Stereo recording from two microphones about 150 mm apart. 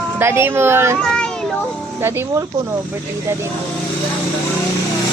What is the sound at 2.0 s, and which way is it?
Speech, 15° right (ahead or behind).